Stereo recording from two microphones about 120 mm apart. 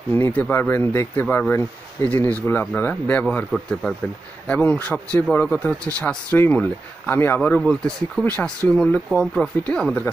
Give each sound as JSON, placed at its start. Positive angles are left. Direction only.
{"t": 0.1, "sound": "speech", "side_deg": 20}
{"t": 4.5, "sound": "speech", "side_deg": 15}